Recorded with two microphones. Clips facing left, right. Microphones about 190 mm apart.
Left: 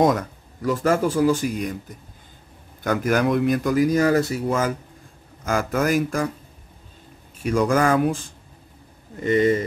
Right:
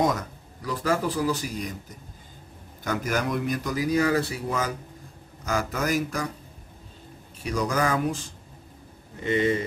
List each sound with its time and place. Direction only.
0.0 s a man's voice: 50° left (ahead or behind)
2.8 s a man's voice: 55° left (ahead or behind)
7.4 s a man's voice: 50° left (ahead or behind)
9.2 s a man's voice: 45° left (ahead or behind)